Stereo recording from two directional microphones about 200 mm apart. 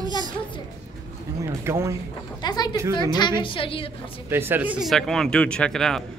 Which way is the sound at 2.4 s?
20° left (ahead or behind).